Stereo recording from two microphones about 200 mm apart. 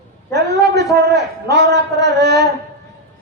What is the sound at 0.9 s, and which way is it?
A man's voice, 55° right (ahead or behind).